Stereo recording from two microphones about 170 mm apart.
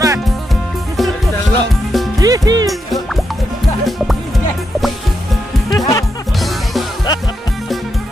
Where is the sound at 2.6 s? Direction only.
Centre (ahead or behind).